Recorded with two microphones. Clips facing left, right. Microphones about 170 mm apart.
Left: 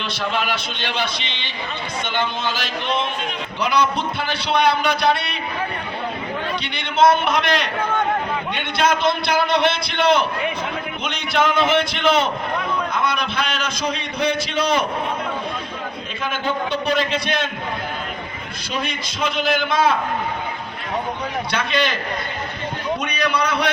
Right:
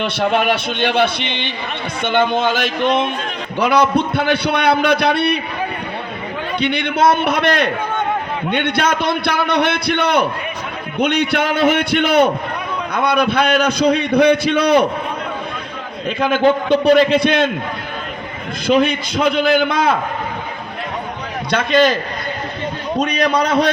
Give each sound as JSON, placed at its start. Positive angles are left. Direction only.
{"t": 0.0, "sound": "a man's voice", "side_deg": -55}
{"t": 6.6, "sound": "a man's voice", "side_deg": -60}
{"t": 16.2, "sound": "a man's voice", "side_deg": -60}
{"t": 18.7, "sound": "a man's voice", "side_deg": -60}
{"t": 21.5, "sound": "a man's voice", "side_deg": -50}
{"t": 23.0, "sound": "a man's voice", "side_deg": -45}